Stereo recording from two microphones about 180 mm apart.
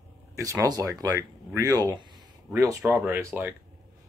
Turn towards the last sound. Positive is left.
turn(degrees=-10)  # may be behind; listen again after turning